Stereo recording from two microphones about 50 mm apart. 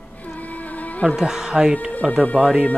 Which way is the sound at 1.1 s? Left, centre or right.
Centre.